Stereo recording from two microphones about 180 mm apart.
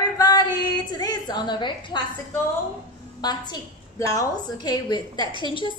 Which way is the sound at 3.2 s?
25° left (ahead or behind).